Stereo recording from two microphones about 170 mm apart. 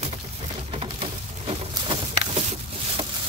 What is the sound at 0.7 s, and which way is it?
Patter, 30° right (ahead or behind).